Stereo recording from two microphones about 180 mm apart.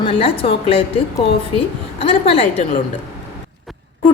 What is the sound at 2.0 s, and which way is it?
Speech, 30° left (ahead or behind).